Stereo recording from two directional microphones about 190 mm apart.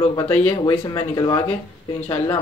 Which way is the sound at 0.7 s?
20° left (ahead or behind).